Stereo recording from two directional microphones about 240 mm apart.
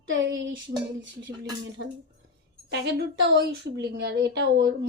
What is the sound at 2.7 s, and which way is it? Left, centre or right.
A woman's voice, right.